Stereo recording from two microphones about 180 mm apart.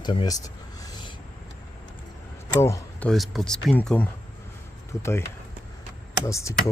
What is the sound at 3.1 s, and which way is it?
Speech, centre (ahead or behind).